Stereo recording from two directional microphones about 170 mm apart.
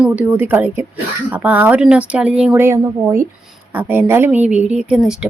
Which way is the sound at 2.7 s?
15° right (ahead or behind).